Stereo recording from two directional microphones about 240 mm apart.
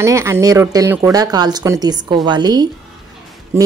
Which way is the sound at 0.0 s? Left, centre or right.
Centre.